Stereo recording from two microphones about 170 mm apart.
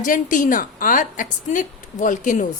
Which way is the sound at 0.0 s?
50° left (ahead or behind).